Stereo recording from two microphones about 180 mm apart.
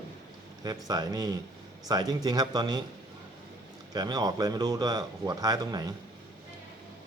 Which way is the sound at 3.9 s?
20° right (ahead or behind).